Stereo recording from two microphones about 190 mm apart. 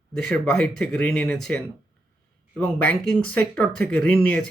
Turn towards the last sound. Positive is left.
turn(degrees=5)  # may be behind; listen again after turning